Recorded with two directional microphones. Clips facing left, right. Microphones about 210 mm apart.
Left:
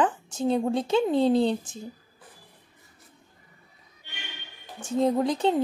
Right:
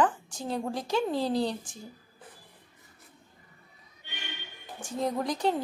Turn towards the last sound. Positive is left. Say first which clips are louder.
# left 5 dB
turn(degrees=25)  # may be behind; listen again after turning